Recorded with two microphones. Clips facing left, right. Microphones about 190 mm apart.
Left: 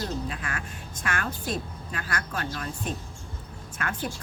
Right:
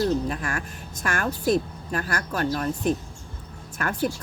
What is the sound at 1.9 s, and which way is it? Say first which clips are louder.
Speech: right 6 dB; 45° right (ahead or behind).